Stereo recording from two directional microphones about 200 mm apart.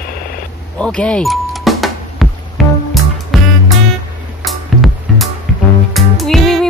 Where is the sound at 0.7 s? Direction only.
5° left (ahead or behind).